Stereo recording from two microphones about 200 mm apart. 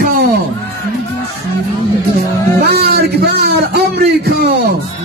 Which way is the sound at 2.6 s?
55° right (ahead or behind).